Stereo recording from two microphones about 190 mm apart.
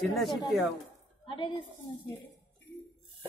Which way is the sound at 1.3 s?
25° left (ahead or behind).